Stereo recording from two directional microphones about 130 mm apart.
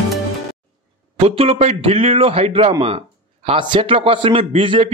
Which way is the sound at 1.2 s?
50° right (ahead or behind).